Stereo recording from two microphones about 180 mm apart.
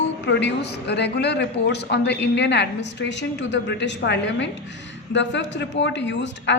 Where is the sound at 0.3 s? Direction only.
75° left (ahead or behind).